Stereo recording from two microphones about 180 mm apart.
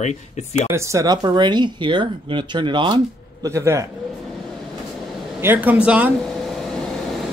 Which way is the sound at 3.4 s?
15° right (ahead or behind).